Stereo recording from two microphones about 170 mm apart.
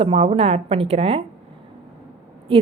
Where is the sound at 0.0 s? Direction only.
35° right (ahead or behind).